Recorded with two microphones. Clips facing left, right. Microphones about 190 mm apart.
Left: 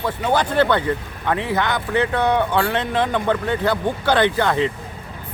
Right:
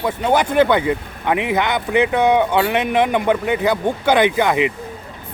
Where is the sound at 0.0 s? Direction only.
15° right (ahead or behind).